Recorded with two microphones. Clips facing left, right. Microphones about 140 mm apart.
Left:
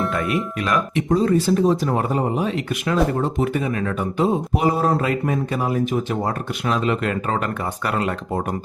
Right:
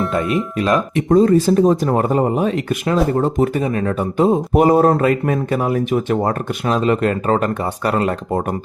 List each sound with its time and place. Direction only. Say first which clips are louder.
0.1 s speech: right 4 dB; 25° right (ahead or behind)
0.9 s speech: right 6 dB; 45° right (ahead or behind)
4.5 s speech: right 7 dB; 50° right (ahead or behind)